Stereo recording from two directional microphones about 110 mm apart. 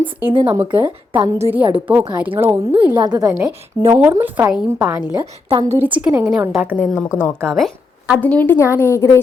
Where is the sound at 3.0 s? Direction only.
35° right (ahead or behind).